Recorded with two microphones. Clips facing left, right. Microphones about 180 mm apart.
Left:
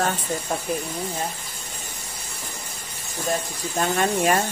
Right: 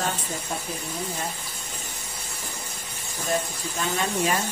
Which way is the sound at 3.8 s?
50° left (ahead or behind).